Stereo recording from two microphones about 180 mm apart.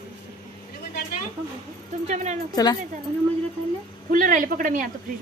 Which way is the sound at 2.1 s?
40° right (ahead or behind).